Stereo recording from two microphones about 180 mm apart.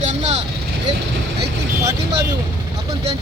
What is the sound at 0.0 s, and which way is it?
Vehicle, 35° right (ahead or behind).